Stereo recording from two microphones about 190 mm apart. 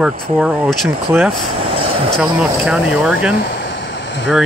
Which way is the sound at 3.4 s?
70° left (ahead or behind).